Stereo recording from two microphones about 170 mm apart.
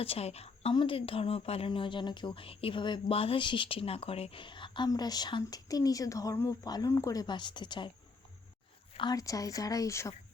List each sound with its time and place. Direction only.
0.0 s speech: 35° left (ahead or behind)
8.9 s speech: 25° left (ahead or behind)